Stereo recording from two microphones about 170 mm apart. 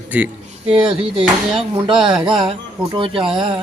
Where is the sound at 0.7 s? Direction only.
30° right (ahead or behind).